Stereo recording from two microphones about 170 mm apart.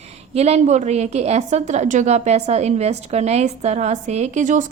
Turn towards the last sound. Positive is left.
turn(degrees=-45)  # may be behind; listen again after turning